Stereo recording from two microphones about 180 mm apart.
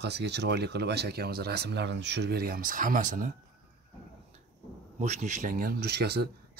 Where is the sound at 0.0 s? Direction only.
70° right (ahead or behind); by 3.3 s 45° right (ahead or behind).